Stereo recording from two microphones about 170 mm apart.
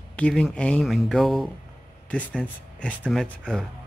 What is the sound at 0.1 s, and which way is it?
Speech, 5° left (ahead or behind).